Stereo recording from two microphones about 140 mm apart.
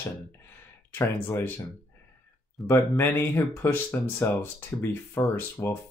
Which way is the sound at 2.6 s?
20° left (ahead or behind).